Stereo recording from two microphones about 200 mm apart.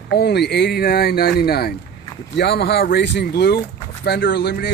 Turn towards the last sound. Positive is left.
turn(degrees=55)  # may be behind; listen again after turning